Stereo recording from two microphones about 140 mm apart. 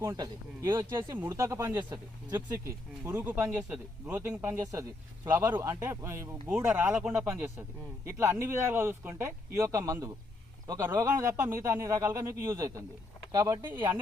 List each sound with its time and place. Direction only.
0.0 s a man's voice: 20° right (ahead or behind)